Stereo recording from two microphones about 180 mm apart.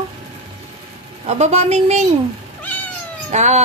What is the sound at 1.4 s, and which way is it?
Speech, 35° right (ahead or behind).